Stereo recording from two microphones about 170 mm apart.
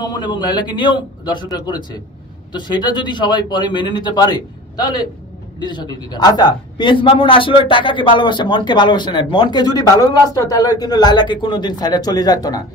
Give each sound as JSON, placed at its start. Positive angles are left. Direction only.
{"t": 0.0, "sound": "a man's voice", "side_deg": 25}